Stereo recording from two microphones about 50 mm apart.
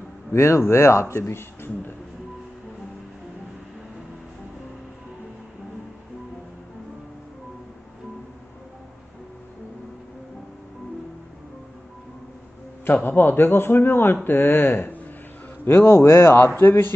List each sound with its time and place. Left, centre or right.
0.3 s speech: left
1.1 s speech: left
12.8 s a man's voice: left